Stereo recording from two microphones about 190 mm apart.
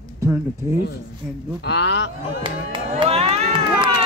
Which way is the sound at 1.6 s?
60° left (ahead or behind).